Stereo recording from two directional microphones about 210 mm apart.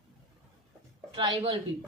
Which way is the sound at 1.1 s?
25° right (ahead or behind).